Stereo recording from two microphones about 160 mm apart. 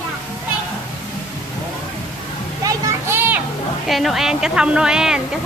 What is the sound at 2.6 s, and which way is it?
Children playing, 20° right (ahead or behind).